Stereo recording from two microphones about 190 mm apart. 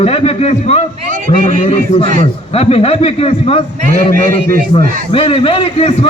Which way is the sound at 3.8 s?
50° right (ahead or behind).